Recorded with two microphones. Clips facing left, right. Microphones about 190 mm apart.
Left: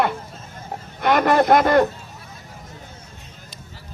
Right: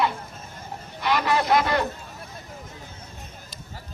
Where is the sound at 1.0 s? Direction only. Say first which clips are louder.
Left 7 dB; 50° left (ahead or behind).